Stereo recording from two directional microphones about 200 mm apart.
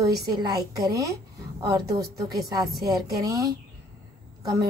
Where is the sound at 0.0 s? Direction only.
20° right (ahead or behind).